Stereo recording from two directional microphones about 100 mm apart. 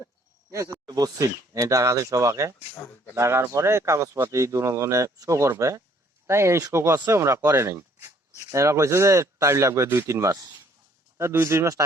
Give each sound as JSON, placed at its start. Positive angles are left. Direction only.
{"t": 0.5, "sound": "speech", "side_deg": -35}